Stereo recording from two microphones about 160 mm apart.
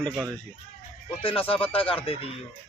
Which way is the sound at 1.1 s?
35° left (ahead or behind).